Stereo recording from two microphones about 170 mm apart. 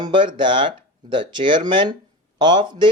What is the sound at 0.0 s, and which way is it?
Speech, 30° right (ahead or behind).